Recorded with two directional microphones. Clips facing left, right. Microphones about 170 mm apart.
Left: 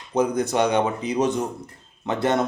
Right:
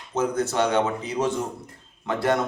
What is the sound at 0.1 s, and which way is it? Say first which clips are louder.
A man's voice: left 3 dB; 15° left (ahead or behind).